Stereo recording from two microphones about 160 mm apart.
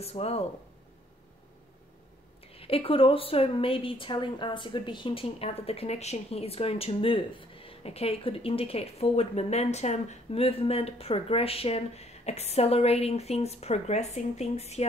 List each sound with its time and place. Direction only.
0.0 s a woman's voice: 40° left (ahead or behind)
2.5 s a woman's voice: 35° left (ahead or behind)